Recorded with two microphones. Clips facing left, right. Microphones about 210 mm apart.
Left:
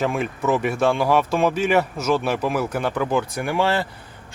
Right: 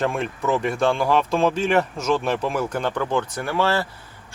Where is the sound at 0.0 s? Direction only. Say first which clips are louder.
Left 1 dB; 5° left (ahead or behind).